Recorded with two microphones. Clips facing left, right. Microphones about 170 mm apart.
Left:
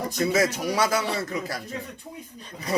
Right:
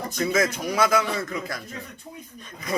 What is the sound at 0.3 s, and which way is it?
A man's voice, 35° left (ahead or behind).